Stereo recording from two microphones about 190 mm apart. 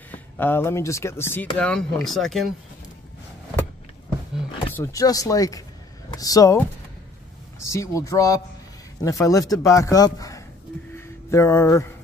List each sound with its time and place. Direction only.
0.1 s speech: 10° left (ahead or behind)
4.7 s speech: 15° left (ahead or behind)
7.6 s speech: 15° left (ahead or behind)
11.0 s a sound: 15° left (ahead or behind)